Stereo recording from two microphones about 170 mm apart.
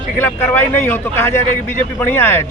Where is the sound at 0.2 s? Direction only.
15° left (ahead or behind).